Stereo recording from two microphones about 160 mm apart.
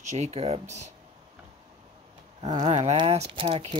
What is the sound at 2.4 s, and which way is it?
Speech, 25° right (ahead or behind).